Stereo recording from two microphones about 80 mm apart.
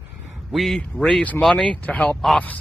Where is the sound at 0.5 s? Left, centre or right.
Centre.